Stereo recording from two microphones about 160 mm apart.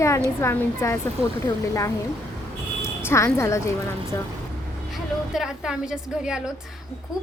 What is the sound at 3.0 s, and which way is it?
Speech, 15° left (ahead or behind).